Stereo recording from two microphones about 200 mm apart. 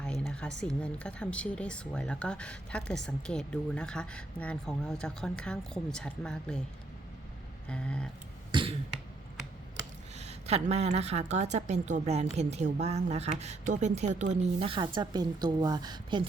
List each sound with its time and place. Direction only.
0.0 s speech: 5° left (ahead or behind)
7.7 s speech: 5° left (ahead or behind)
8.5 s cough: 25° right (ahead or behind)
10.2 s speech: 30° right (ahead or behind)